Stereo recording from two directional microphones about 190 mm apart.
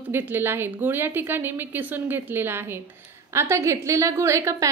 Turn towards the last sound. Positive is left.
turn(degrees=-15)  # may be behind; listen again after turning